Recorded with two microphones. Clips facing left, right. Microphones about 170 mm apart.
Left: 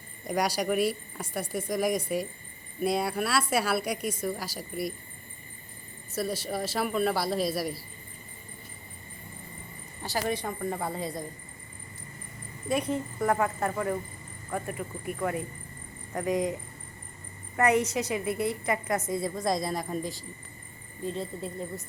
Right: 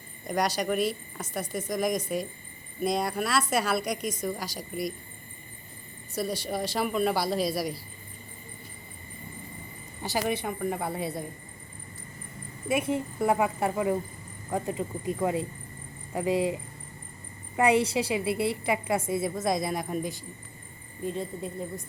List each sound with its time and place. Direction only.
0.3 s a woman's voice: 10° left (ahead or behind)
6.1 s speech: 5° left (ahead or behind)
10.0 s speech: 10° right (ahead or behind)
12.6 s speech: 5° right (ahead or behind)
17.6 s speech: 10° right (ahead or behind)